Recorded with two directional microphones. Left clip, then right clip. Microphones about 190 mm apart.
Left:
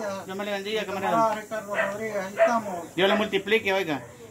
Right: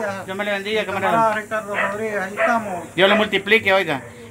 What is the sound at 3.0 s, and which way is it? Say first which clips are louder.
Speech: right 7 dB; 20° right (ahead or behind).